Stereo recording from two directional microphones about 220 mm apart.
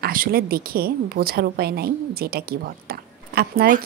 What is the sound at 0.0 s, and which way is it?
A woman's voice, 40° right (ahead or behind).